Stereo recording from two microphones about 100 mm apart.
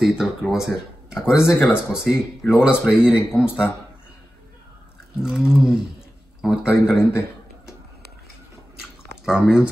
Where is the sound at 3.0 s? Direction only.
10° right (ahead or behind).